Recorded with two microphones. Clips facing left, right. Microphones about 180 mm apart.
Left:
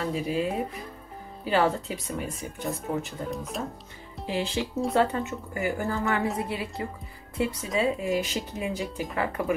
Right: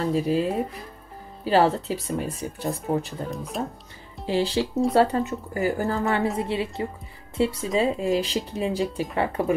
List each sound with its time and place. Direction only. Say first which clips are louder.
0.0 s speech: right 6 dB; 35° right (ahead or behind)
1.4 s speech: right 4 dB; 35° right (ahead or behind)
3.3 s speech: right 2 dB; centre (ahead or behind)
4.3 s a woman's voice: right 6 dB; 35° right (ahead or behind)